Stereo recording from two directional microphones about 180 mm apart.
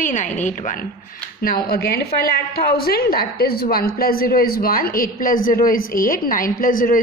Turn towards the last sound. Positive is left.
turn(degrees=50)  # may be behind; listen again after turning